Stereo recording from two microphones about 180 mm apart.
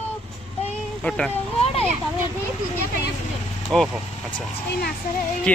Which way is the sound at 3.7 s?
5° left (ahead or behind).